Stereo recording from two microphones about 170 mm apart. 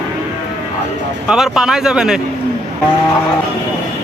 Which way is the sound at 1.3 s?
5° right (ahead or behind).